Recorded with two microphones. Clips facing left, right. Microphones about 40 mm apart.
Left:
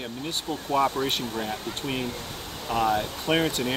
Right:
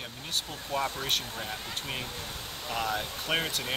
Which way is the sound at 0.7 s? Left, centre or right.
Centre.